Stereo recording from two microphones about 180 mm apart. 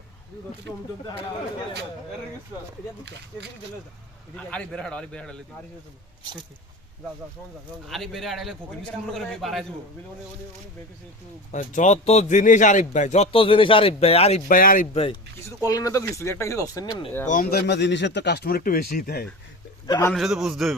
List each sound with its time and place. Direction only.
4.4 s a man's voice: 5° left (ahead or behind)
7.9 s a man's voice: centre (ahead or behind)
11.5 s speech: 40° left (ahead or behind)
14.9 s speech: 30° left (ahead or behind)
15.4 s speech: 15° left (ahead or behind)
17.2 s speech: 50° left (ahead or behind)
19.9 s speech: 15° left (ahead or behind)
20.1 s a man's voice: centre (ahead or behind)